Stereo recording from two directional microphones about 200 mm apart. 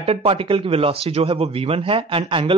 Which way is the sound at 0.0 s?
30° right (ahead or behind).